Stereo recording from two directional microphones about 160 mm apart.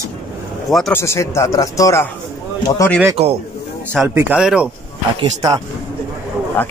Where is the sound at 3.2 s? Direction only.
40° right (ahead or behind).